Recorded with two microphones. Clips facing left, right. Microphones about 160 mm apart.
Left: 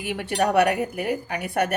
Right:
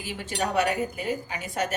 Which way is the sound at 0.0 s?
65° left (ahead or behind).